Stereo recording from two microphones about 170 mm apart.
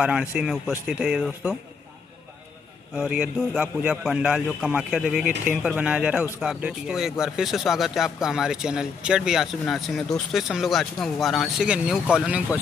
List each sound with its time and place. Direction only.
0.0 s speech: 5° right (ahead or behind)
3.0 s speech: 5° right (ahead or behind)